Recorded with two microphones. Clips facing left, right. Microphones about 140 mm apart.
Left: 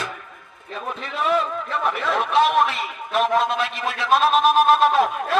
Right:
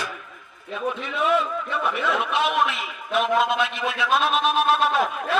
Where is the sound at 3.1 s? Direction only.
40° left (ahead or behind).